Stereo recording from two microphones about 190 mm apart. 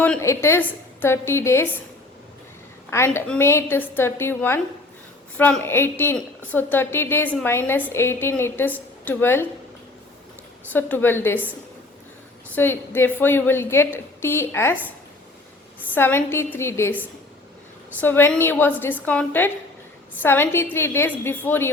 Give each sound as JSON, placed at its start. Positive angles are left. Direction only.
{"t": 0.0, "sound": "a woman's voice", "side_deg": 10}
{"t": 3.2, "sound": "a woman's voice", "side_deg": 10}
{"t": 10.7, "sound": "a woman's voice", "side_deg": 10}
{"t": 12.5, "sound": "a woman's voice", "side_deg": 10}
{"t": 16.0, "sound": "a woman's voice", "side_deg": 10}